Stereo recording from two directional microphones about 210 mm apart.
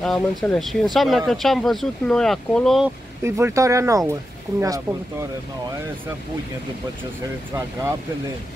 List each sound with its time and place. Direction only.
0.0 s speech: centre (ahead or behind)
3.3 s speech: 15° right (ahead or behind)